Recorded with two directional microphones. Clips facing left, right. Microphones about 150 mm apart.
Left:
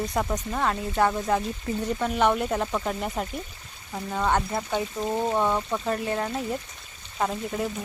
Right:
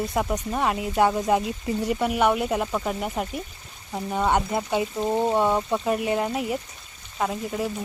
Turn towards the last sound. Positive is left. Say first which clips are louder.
# right 1 dB
turn(degrees=-5)  # may be behind; listen again after turning